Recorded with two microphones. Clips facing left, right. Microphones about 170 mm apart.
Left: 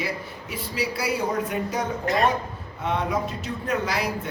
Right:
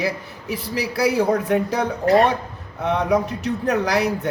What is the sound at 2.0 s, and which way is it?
Speech, 35° right (ahead or behind).